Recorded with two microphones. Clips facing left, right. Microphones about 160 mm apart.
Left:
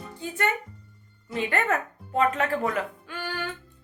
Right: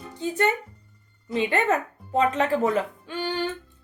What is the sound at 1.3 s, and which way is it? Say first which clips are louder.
A woman's voice: right 3 dB; 20° right (ahead or behind).